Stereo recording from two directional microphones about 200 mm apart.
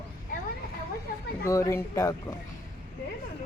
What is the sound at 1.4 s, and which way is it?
Speech, 15° left (ahead or behind).